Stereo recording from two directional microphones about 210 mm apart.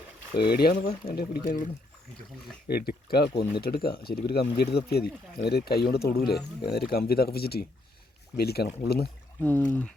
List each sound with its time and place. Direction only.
0.3 s speech: 45° left (ahead or behind)
9.4 s speech: 10° left (ahead or behind)